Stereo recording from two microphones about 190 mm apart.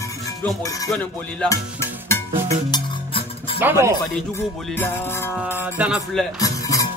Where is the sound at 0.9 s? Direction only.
5° left (ahead or behind).